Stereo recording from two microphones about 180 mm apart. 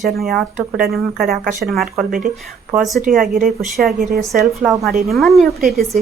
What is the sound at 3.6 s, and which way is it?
Speech, centre (ahead or behind).